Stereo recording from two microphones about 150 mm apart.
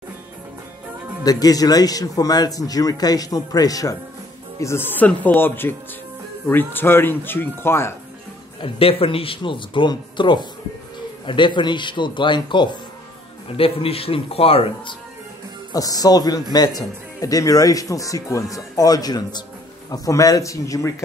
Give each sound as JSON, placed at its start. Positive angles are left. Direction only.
{"t": 1.2, "sound": "speech", "side_deg": 25}
{"t": 8.5, "sound": "speech", "side_deg": 35}
{"t": 15.7, "sound": "speech", "side_deg": 25}